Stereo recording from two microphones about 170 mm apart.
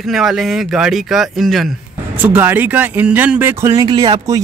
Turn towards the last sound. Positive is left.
turn(degrees=-20)  # may be behind; listen again after turning